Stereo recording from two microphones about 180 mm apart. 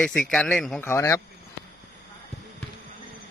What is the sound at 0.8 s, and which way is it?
Speech, 15° left (ahead or behind).